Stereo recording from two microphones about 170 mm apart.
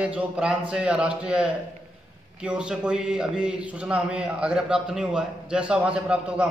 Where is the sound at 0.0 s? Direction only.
5° right (ahead or behind).